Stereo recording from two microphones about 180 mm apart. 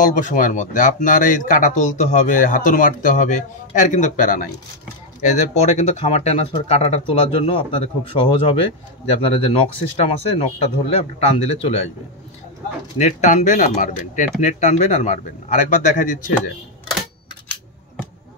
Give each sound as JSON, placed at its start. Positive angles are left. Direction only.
{"t": 0.0, "sound": "speech", "side_deg": 45}
{"t": 12.9, "sound": "speech", "side_deg": 40}